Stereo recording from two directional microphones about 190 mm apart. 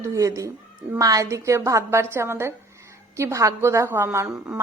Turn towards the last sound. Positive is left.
turn(degrees=-15)  # may be behind; listen again after turning